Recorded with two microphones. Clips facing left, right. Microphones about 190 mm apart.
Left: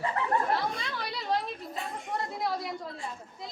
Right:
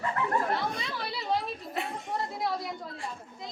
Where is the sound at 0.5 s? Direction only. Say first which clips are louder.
Left 1 dB; centre (ahead or behind).